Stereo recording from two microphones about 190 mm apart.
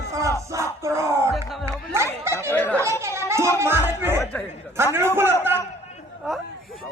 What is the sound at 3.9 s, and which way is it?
Music, 10° right (ahead or behind).